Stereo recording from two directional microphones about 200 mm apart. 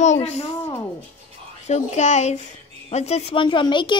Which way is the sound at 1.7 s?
35° left (ahead or behind).